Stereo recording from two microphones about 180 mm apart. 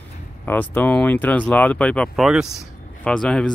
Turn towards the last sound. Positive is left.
turn(degrees=5)  # may be behind; listen again after turning